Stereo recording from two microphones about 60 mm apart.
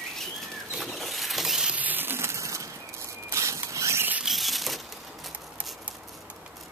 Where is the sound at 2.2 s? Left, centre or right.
Right.